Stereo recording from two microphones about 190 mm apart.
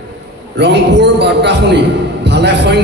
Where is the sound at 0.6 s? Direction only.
65° right (ahead or behind).